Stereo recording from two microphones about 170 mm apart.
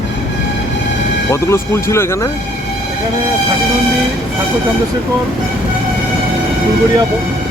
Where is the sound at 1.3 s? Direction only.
15° left (ahead or behind).